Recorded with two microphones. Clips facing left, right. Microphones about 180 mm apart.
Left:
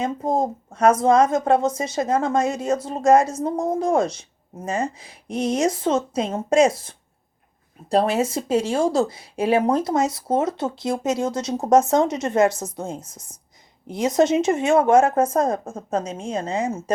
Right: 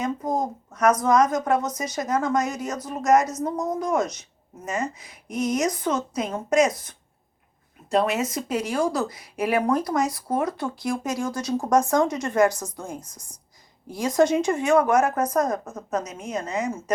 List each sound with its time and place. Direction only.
0.0 s speech: 25° left (ahead or behind)